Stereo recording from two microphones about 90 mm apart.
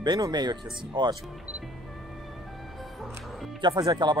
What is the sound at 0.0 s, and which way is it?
Speech, 55° right (ahead or behind).